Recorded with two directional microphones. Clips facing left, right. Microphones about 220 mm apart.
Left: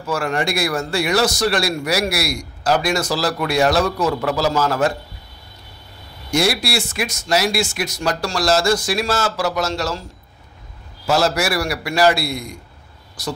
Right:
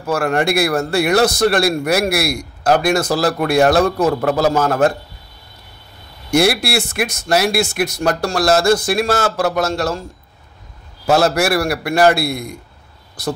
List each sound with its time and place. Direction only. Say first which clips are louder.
0.0 s a man's voice: right 4 dB; 60° right (ahead or behind)
6.3 s a man's voice: right 4 dB; 60° right (ahead or behind)
11.1 s a man's voice: right 4 dB; 55° right (ahead or behind)